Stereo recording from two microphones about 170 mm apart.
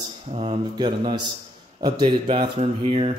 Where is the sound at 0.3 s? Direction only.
35° right (ahead or behind).